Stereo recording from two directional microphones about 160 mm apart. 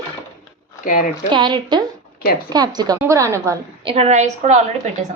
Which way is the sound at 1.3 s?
30° right (ahead or behind).